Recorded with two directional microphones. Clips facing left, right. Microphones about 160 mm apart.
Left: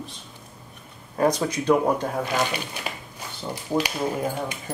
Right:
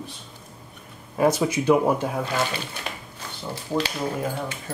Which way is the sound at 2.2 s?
15° left (ahead or behind).